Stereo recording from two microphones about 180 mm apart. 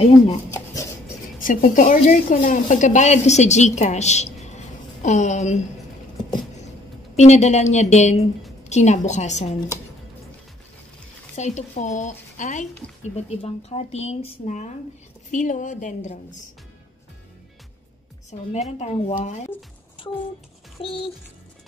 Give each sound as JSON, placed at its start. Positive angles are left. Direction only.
{"t": 1.4, "sound": "speech", "side_deg": 50}
{"t": 7.2, "sound": "speech", "side_deg": 40}
{"t": 11.3, "sound": "a woman's voice", "side_deg": 40}
{"t": 18.3, "sound": "speech", "side_deg": 40}
{"t": 20.8, "sound": "speech", "side_deg": 30}